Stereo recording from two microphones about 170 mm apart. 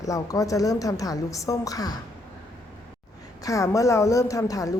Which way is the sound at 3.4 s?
20° left (ahead or behind).